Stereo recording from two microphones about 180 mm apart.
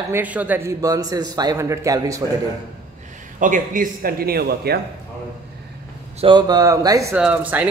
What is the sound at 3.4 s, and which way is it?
A man's voice, 50° right (ahead or behind).